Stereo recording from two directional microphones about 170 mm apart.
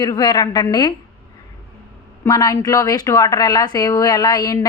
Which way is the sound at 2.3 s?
20° left (ahead or behind).